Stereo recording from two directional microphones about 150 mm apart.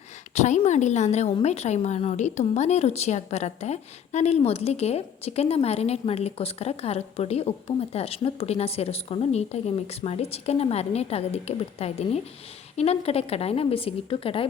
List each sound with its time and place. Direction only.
0.3 s a woman's voice: 50° left (ahead or behind)